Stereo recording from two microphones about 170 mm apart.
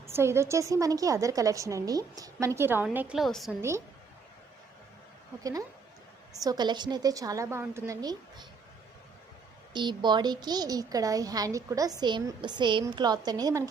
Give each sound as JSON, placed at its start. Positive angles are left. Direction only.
{"t": 0.1, "sound": "a woman's voice", "side_deg": -15}
{"t": 3.6, "sound": "a woman's voice", "side_deg": -15}
{"t": 5.4, "sound": "a woman's voice", "side_deg": -20}
{"t": 9.7, "sound": "a woman's voice", "side_deg": -25}